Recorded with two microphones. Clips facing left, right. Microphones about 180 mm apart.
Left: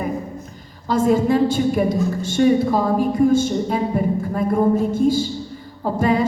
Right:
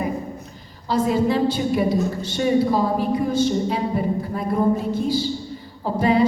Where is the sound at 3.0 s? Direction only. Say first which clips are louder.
Left 4 dB; 45° left (ahead or behind).